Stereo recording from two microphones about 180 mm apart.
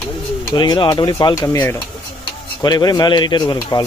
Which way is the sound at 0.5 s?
25° left (ahead or behind).